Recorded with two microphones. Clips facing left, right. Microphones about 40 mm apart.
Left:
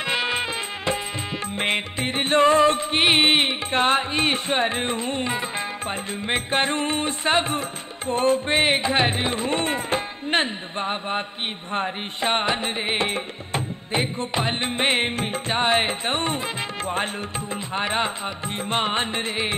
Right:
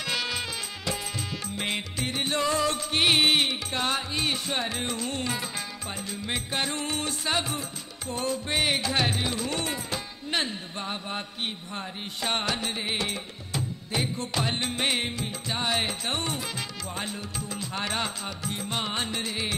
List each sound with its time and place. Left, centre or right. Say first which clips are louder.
0.0 s music: left 6 dB; left